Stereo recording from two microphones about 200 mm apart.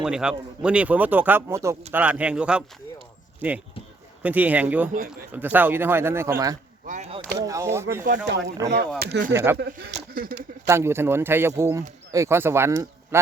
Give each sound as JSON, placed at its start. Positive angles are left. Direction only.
{"t": 0.0, "sound": "speech", "side_deg": -5}
{"t": 4.2, "sound": "speech", "side_deg": -10}
{"t": 6.8, "sound": "speech", "side_deg": -35}
{"t": 7.3, "sound": "speech", "side_deg": -15}
{"t": 9.0, "sound": "speech", "side_deg": -55}
{"t": 9.3, "sound": "speech", "side_deg": -10}
{"t": 9.6, "sound": "speech", "side_deg": -55}
{"t": 9.9, "sound": "speech", "side_deg": -45}
{"t": 10.7, "sound": "speech", "side_deg": -15}